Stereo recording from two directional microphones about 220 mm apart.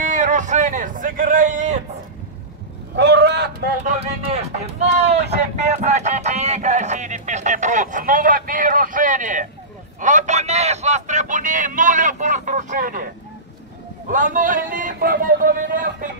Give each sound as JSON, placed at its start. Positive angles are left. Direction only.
{"t": 0.0, "sound": "a man's voice", "side_deg": -35}
{"t": 3.0, "sound": "speech", "side_deg": -50}
{"t": 3.8, "sound": "a man's voice", "side_deg": -30}